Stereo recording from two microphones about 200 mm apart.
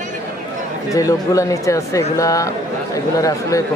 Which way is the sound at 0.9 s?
15° left (ahead or behind).